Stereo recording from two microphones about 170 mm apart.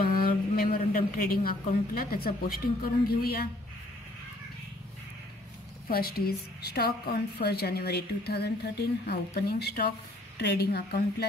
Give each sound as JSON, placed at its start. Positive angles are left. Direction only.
{"t": 0.0, "sound": "a woman's voice", "side_deg": 60}
{"t": 5.9, "sound": "a woman's voice", "side_deg": 65}